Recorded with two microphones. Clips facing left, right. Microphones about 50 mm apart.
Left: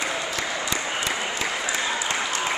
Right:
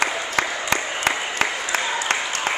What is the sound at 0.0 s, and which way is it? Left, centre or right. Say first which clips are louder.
Applause: right 5 dB; right.